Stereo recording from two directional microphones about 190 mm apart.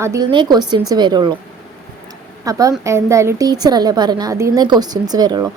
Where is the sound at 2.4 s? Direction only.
20° right (ahead or behind).